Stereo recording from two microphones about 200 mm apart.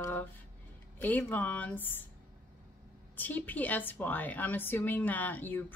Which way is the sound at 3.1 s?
10° left (ahead or behind).